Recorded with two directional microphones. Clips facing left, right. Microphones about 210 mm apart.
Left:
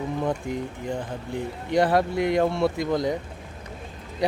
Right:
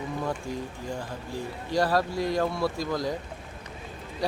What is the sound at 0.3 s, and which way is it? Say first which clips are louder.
Speech: left 4 dB; 20° left (ahead or behind).